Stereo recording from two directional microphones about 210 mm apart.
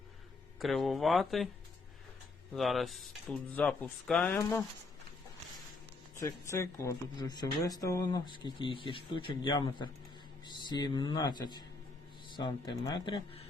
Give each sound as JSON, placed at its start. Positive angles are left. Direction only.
{"t": 0.6, "sound": "speech", "side_deg": 0}
{"t": 2.6, "sound": "speech", "side_deg": 0}
{"t": 4.4, "sound": "speech", "side_deg": 15}
{"t": 6.1, "sound": "speech", "side_deg": 15}